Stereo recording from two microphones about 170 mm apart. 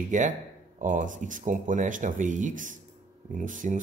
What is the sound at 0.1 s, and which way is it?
Speech, 50° right (ahead or behind).